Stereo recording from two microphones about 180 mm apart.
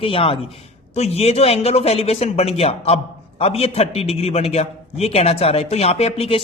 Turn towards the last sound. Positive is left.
turn(degrees=30)  # may be behind; listen again after turning